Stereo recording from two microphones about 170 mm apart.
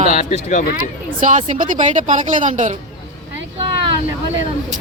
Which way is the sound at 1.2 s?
50° right (ahead or behind).